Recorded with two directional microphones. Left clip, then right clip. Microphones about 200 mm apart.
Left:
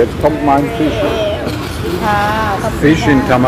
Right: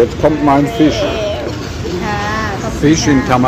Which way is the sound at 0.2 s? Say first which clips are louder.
Right 1 dB; 55° right (ahead or behind).